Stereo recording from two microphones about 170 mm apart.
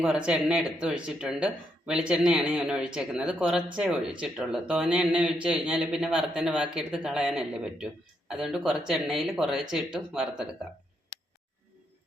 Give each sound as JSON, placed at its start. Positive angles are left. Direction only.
{"t": 0.0, "sound": "speech", "side_deg": -5}